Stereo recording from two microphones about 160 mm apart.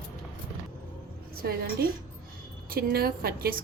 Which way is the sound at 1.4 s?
85° right.